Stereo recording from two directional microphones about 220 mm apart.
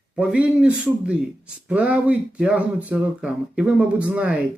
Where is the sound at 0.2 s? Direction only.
5° right (ahead or behind).